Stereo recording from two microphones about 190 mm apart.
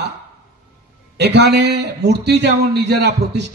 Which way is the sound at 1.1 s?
65° right (ahead or behind).